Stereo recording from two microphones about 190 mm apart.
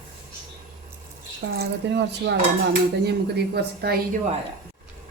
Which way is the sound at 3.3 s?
55° right (ahead or behind).